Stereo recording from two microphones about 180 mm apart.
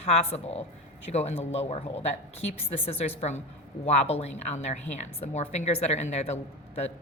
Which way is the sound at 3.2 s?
40° left (ahead or behind).